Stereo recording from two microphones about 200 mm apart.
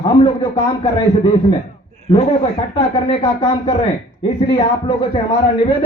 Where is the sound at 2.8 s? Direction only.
20° left (ahead or behind).